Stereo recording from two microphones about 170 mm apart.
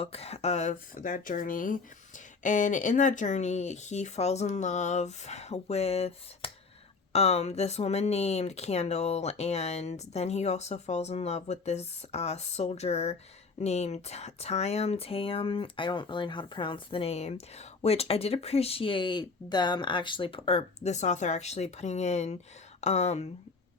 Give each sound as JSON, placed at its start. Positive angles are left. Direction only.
{"t": 0.0, "sound": "speech", "side_deg": 35}